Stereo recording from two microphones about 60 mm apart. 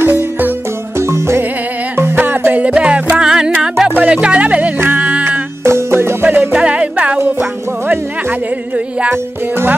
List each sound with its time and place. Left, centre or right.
0.0 s music: right; by 3.5 s centre
4.0 s speech: centre
4.7 s music: right
5.6 s music: right
6.2 s music: right
9.1 s music: right